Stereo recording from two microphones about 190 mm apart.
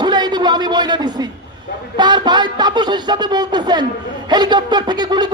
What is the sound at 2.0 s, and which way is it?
A woman's voice, 20° right (ahead or behind).